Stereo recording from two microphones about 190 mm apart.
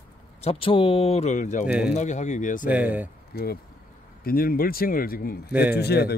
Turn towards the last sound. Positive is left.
turn(degrees=60)  # may be behind; listen again after turning